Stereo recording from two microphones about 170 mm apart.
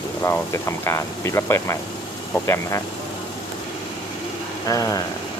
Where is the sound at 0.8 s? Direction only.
15° left (ahead or behind).